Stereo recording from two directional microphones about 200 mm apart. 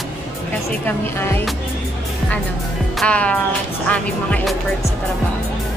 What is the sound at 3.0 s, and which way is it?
Speech, 5° left (ahead or behind).